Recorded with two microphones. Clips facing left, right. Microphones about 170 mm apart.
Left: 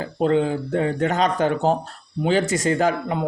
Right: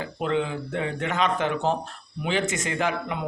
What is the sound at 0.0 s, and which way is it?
Speech, 40° left (ahead or behind).